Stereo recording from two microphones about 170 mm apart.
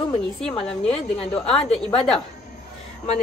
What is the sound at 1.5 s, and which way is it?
Speech, centre (ahead or behind).